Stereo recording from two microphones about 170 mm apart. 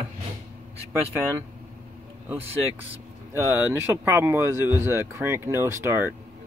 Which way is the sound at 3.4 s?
10° right (ahead or behind).